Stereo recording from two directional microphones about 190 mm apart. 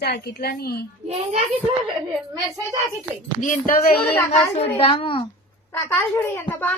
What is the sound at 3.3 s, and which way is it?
A woman's voice, 40° left (ahead or behind).